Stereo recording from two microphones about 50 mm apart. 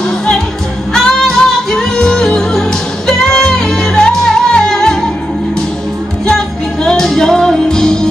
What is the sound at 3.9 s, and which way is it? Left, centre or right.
Music, centre.